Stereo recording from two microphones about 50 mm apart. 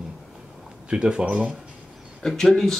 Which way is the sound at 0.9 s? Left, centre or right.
Centre.